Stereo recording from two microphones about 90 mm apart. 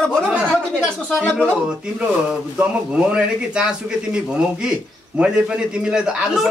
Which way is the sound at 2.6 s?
10° right (ahead or behind).